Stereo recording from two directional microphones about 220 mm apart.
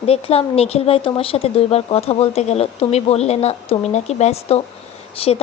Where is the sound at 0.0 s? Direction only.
25° left (ahead or behind).